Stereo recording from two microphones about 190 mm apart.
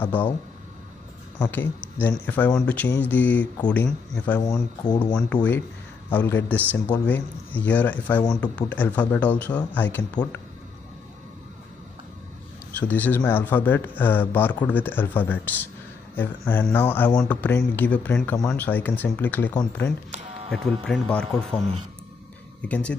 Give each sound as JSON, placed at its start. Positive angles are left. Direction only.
{"t": 0.0, "sound": "speech", "side_deg": 10}
{"t": 1.4, "sound": "speech", "side_deg": 10}
{"t": 5.1, "sound": "speech", "side_deg": 5}
{"t": 12.7, "sound": "speech", "side_deg": 10}